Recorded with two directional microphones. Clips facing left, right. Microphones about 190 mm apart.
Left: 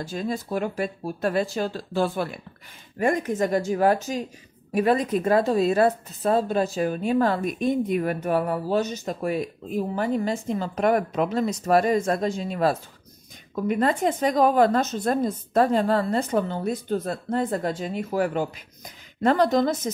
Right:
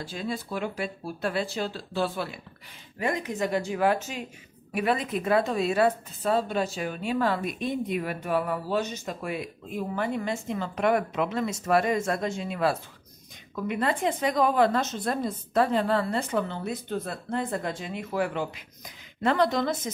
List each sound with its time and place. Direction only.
0.0 s a woman's voice: 45° left (ahead or behind)